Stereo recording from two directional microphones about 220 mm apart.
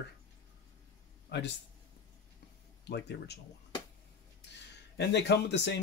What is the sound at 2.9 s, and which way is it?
Speech, 50° left (ahead or behind).